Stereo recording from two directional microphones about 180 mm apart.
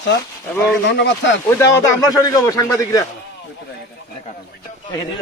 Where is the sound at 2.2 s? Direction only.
20° left (ahead or behind).